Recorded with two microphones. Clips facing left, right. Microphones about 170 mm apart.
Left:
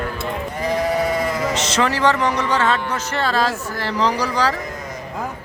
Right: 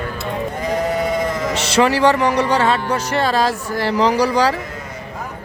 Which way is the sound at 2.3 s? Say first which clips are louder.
Right 4 dB; 35° right (ahead or behind).